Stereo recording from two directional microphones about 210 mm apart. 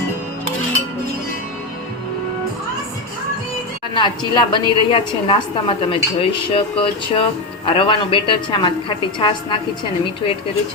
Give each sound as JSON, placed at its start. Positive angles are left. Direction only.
{"t": 3.9, "sound": "a woman's voice", "side_deg": 20}